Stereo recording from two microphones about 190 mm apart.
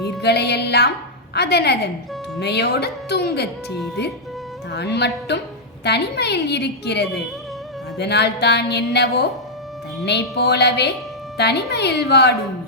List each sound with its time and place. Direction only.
0.2 s speech: 60° left (ahead or behind)
4.7 s speech: 60° left (ahead or behind)